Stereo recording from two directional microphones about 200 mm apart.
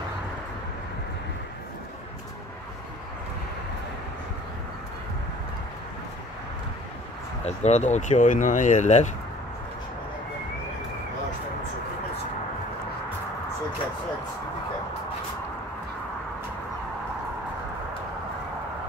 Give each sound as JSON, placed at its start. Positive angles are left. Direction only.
{"t": 7.4, "sound": "speech", "side_deg": 35}